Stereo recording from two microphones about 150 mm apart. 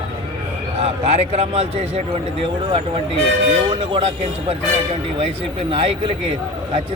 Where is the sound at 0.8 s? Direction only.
40° right (ahead or behind).